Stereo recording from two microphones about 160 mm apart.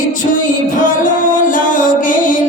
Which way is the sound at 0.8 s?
55° left (ahead or behind).